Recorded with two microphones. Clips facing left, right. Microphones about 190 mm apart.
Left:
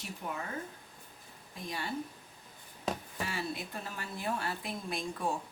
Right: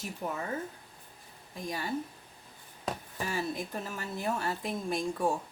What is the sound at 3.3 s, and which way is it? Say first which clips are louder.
Speech: right 5 dB; 45° right (ahead or behind).